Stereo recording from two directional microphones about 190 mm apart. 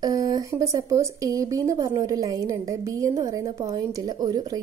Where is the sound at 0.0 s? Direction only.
20° right (ahead or behind).